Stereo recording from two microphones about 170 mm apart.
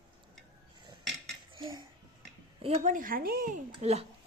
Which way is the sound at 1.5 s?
30° right (ahead or behind).